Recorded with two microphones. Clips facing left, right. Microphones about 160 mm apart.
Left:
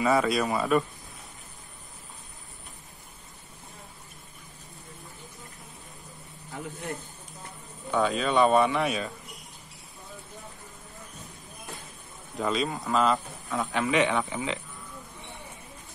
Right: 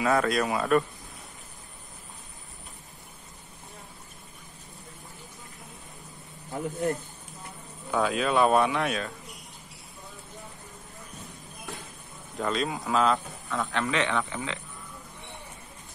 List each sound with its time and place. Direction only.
0.0 s speech: centre (ahead or behind)
7.9 s speech: centre (ahead or behind)
12.4 s speech: centre (ahead or behind)
13.6 s speech: 15° left (ahead or behind)